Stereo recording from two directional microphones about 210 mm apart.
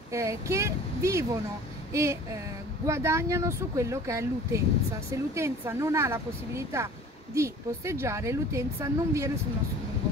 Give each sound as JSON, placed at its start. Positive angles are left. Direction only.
{"t": 0.1, "sound": "a woman's voice", "side_deg": -15}